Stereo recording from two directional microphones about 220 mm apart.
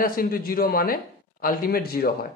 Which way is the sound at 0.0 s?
40° left (ahead or behind).